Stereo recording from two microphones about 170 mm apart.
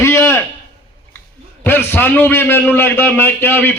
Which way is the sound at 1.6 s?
15° left (ahead or behind).